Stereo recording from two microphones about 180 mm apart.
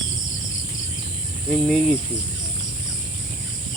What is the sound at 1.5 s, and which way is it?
Speech, 5° left (ahead or behind).